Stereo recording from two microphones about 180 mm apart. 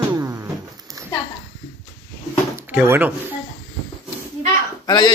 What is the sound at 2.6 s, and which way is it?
Speech, 10° right (ahead or behind).